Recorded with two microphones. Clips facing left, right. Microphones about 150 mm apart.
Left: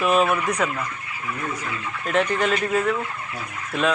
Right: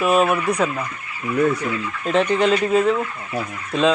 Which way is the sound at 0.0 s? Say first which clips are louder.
Right 2 dB; 5° right (ahead or behind).